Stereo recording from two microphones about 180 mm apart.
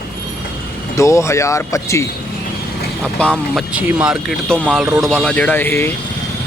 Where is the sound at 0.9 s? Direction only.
15° left (ahead or behind).